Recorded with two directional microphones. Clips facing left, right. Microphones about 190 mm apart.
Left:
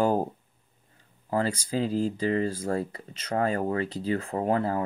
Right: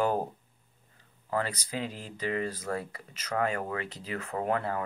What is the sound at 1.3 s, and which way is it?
Speech, 30° left (ahead or behind).